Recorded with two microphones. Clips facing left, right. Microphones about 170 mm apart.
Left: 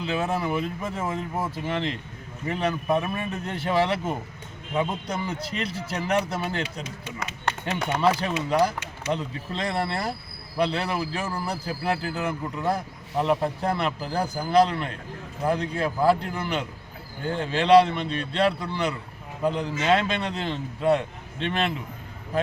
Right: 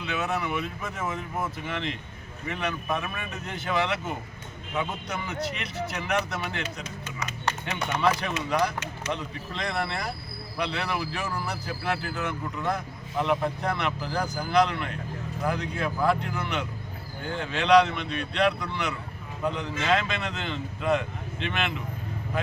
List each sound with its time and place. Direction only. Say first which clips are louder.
0.0 s speech: left 3 dB; 30° left (ahead or behind)
8.4 s speech: left 4 dB; 30° left (ahead or behind)